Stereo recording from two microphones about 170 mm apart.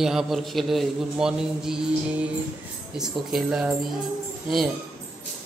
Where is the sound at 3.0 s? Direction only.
5° right (ahead or behind).